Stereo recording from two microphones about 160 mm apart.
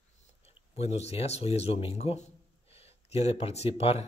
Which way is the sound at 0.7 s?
40° left (ahead or behind).